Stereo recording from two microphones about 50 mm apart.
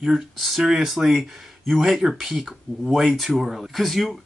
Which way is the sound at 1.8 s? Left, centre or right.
Centre.